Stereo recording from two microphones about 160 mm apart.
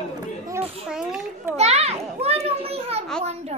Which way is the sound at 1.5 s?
40° right (ahead or behind).